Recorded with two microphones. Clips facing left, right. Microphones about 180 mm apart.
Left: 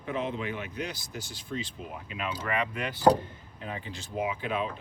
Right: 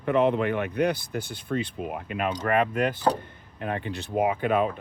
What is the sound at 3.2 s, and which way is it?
Speech, 60° right (ahead or behind).